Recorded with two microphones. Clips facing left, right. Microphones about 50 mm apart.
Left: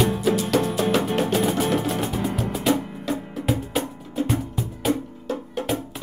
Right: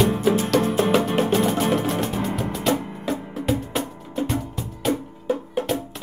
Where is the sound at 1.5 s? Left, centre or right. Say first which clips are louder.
Right 1 dB; centre.